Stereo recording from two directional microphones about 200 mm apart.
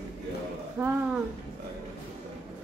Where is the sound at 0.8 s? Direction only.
10° right (ahead or behind).